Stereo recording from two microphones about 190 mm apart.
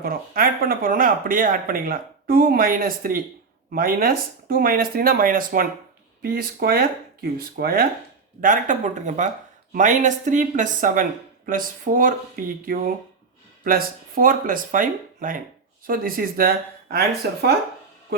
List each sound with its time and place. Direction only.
0.0 s speech: 50° right (ahead or behind)